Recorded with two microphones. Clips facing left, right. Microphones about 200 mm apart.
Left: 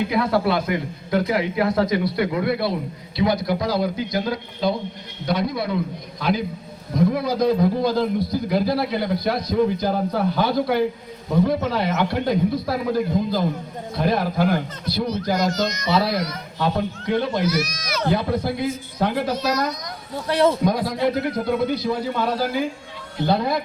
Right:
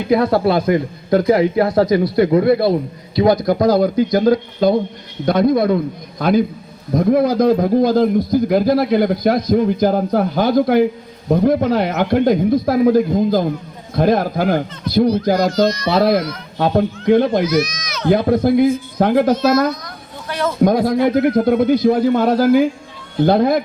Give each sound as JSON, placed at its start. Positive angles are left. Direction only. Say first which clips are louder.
{"t": 0.1, "sound": "a man's voice", "louder": "right 6 dB", "side_deg": -40}
{"t": 17.4, "sound": "speech", "louder": "right 6 dB", "side_deg": 10}
{"t": 18.1, "sound": "a man's voice", "louder": "right 10 dB", "side_deg": -45}
{"t": 20.1, "sound": "speech", "louder": "left 3 dB", "side_deg": 35}
{"t": 20.7, "sound": "a man's voice", "louder": "right 6 dB", "side_deg": -50}